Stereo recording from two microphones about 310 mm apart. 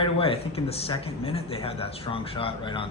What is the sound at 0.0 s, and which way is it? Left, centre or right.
Speech, centre.